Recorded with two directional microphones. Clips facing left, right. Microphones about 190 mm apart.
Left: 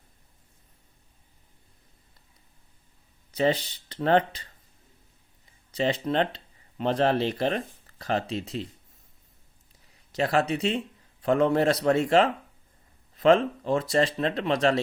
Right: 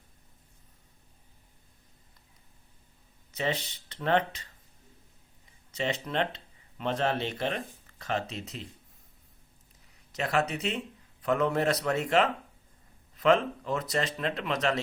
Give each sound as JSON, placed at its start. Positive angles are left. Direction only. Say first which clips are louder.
{"t": 3.3, "sound": "speech", "louder": "left 7 dB", "side_deg": 35}
{"t": 5.7, "sound": "speech", "louder": "left 5 dB", "side_deg": 35}
{"t": 10.1, "sound": "speech", "louder": "left 4 dB", "side_deg": 35}